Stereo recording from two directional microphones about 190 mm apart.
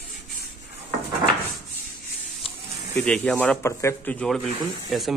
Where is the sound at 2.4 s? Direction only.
30° left (ahead or behind).